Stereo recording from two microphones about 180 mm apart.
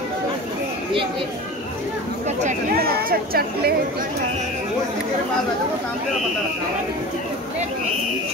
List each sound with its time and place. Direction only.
2.7 s speech: 60° right (ahead or behind)